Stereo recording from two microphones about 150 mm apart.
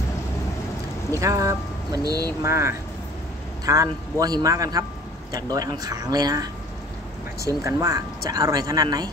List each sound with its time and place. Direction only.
1.2 s speech: 20° right (ahead or behind)